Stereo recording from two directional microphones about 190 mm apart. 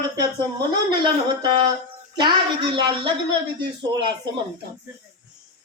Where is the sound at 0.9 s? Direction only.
25° right (ahead or behind).